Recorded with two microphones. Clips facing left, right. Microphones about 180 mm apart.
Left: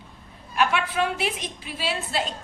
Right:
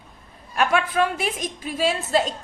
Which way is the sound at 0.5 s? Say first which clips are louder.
Right 3 dB; 45° right (ahead or behind).